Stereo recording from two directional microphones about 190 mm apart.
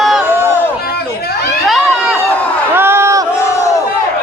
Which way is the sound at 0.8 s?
55° left (ahead or behind).